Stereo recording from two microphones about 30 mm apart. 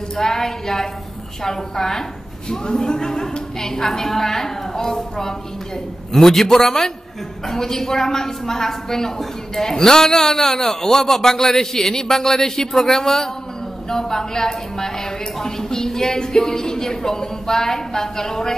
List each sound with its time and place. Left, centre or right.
0.1 s a woman's voice: centre